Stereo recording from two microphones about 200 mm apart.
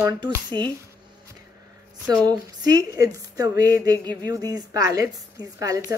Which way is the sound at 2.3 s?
20° right (ahead or behind).